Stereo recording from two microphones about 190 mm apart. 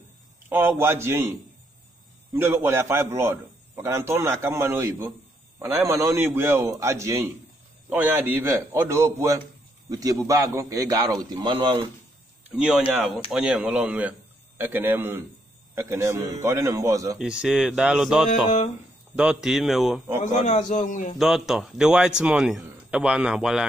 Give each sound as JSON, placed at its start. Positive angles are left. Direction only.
{"t": 0.5, "sound": "a man's voice", "side_deg": -10}
{"t": 2.3, "sound": "a man's voice", "side_deg": -10}
{"t": 12.4, "sound": "a man's voice", "side_deg": -5}
{"t": 17.2, "sound": "a man's voice", "side_deg": -5}
{"t": 20.2, "sound": "a man's voice", "side_deg": 40}
{"t": 21.2, "sound": "a man's voice", "side_deg": 0}